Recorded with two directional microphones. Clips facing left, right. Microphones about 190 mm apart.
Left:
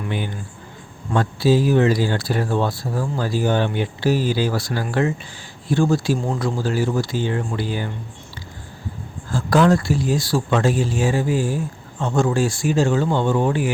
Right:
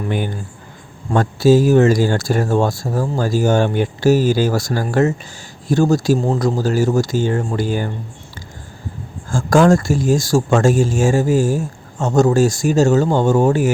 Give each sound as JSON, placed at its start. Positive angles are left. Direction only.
{"t": 0.0, "sound": "speech", "side_deg": -45}
{"t": 9.3, "sound": "speech", "side_deg": -45}